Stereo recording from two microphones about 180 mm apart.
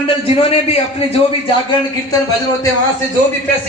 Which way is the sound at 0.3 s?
35° left (ahead or behind).